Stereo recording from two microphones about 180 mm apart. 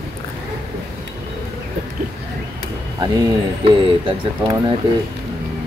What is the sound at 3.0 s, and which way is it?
Speech, 25° right (ahead or behind).